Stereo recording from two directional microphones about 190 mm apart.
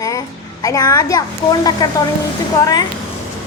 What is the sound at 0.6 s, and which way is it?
A woman's voice, 15° left (ahead or behind).